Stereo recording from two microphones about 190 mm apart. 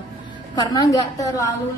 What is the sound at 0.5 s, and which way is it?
A woman's voice, 20° left (ahead or behind).